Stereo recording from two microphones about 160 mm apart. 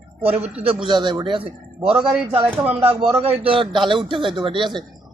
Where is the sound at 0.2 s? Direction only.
40° right (ahead or behind).